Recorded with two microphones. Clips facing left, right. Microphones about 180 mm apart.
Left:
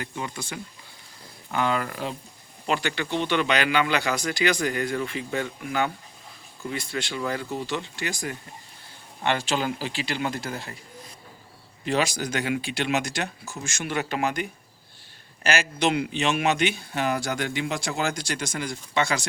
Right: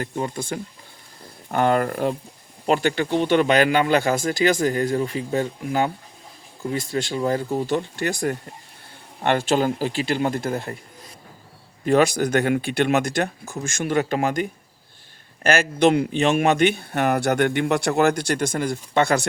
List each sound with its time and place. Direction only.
0.0 s speech: 45° right (ahead or behind)
11.9 s speech: 55° right (ahead or behind)
15.4 s speech: 55° right (ahead or behind)